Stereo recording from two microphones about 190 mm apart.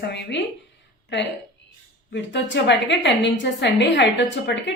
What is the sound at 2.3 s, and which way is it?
A woman's voice, 65° left (ahead or behind).